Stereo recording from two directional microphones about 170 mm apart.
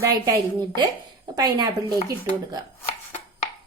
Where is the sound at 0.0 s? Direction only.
20° right (ahead or behind).